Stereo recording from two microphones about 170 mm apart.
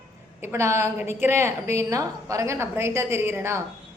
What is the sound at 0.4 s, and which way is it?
A woman's voice, 15° right (ahead or behind).